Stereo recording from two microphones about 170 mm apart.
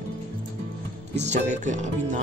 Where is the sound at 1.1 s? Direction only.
40° right (ahead or behind).